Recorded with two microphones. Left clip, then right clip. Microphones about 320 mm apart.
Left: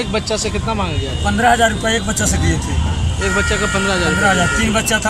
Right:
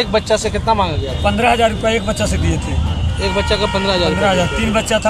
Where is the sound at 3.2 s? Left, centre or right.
Right.